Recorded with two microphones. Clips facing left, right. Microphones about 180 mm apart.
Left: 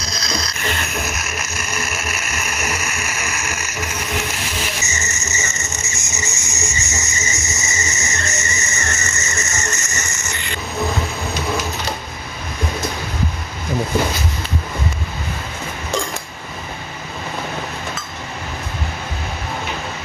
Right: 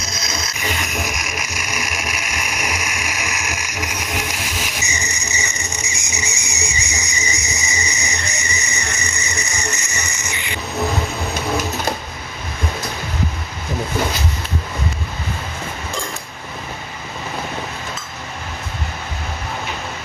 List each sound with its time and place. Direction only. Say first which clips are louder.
0.6 s music: even; 10° right (ahead or behind)